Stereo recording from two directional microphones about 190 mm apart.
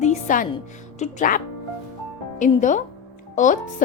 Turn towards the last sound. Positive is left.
turn(degrees=40)  # may be behind; listen again after turning